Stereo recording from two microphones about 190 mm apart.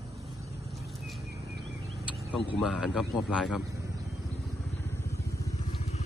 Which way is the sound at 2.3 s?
Centre (ahead or behind).